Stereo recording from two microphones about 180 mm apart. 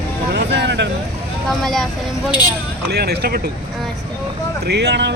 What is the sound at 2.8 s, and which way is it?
Speech, 65° right (ahead or behind).